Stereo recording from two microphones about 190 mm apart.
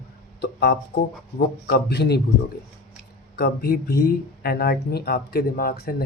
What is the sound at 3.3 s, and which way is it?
Speech, 55° left (ahead or behind).